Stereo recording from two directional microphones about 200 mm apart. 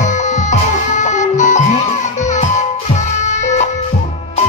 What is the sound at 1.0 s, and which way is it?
Music, 35° left (ahead or behind).